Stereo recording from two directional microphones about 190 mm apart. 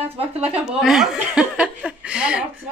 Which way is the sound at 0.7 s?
Centre (ahead or behind).